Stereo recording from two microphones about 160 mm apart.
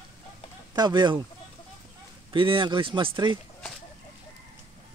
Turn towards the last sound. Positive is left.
turn(degrees=-30)  # may be behind; listen again after turning